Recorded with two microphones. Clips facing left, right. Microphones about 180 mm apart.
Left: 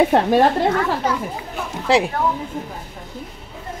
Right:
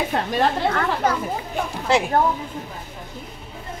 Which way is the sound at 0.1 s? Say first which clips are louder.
Left 7 dB; 60° left (ahead or behind).